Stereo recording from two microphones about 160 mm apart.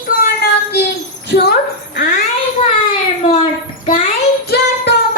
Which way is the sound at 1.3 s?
75° left (ahead or behind).